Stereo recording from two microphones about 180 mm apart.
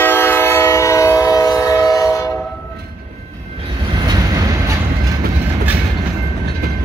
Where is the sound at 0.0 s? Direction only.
10° left (ahead or behind).